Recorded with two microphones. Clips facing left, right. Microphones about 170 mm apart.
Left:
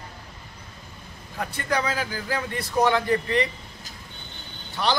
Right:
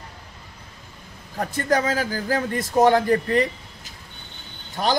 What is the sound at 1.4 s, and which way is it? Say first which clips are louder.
A man's voice: right 5 dB; 45° right (ahead or behind).